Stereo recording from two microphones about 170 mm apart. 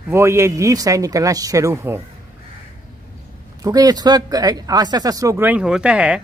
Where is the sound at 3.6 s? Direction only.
20° right (ahead or behind); by 6.1 s 5° right (ahead or behind).